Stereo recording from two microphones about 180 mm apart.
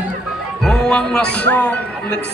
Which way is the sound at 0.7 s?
5° left (ahead or behind).